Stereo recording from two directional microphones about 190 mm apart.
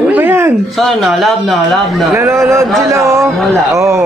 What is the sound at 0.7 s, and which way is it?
A man's voice, centre (ahead or behind).